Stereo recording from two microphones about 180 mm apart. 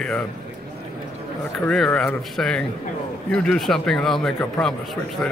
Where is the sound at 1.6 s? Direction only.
5° left (ahead or behind).